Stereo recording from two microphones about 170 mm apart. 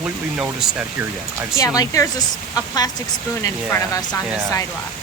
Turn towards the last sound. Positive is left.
turn(degrees=20)  # may be behind; listen again after turning